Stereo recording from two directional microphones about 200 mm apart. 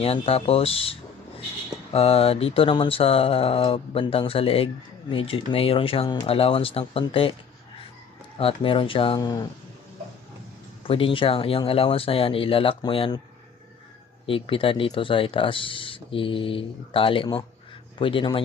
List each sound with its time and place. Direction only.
0.0 s speech: 30° left (ahead or behind)
8.4 s speech: 25° left (ahead or behind)
10.8 s speech: 25° left (ahead or behind)
14.3 s speech: 25° left (ahead or behind)